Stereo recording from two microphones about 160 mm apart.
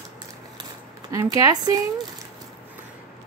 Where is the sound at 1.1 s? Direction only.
20° right (ahead or behind).